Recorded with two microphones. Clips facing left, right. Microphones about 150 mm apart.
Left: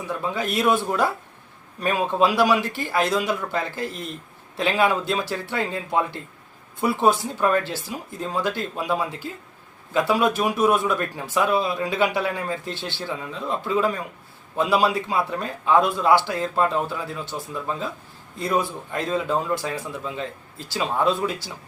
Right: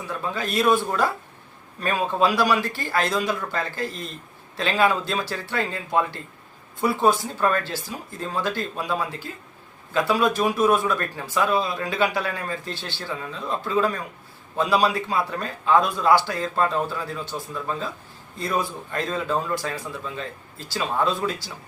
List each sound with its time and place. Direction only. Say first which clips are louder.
0.1 s a man's voice: left 2 dB; 20° left (ahead or behind)